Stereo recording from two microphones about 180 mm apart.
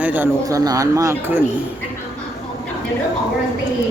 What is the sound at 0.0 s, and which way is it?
Speech, 10° right (ahead or behind).